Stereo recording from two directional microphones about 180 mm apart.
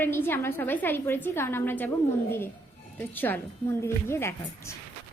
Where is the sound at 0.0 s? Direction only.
10° left (ahead or behind).